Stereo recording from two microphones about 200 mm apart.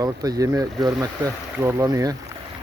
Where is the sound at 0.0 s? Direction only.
20° right (ahead or behind).